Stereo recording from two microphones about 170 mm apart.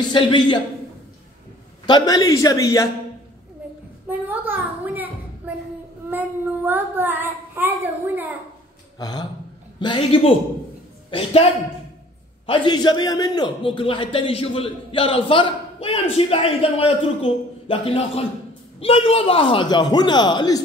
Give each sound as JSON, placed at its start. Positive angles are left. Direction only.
{"t": 0.1, "sound": "a man's voice", "side_deg": 25}
{"t": 1.9, "sound": "a man's voice", "side_deg": 25}
{"t": 4.3, "sound": "a sound", "side_deg": -10}
{"t": 6.0, "sound": "a child's voice", "side_deg": -10}
{"t": 9.0, "sound": "a man's voice", "side_deg": 25}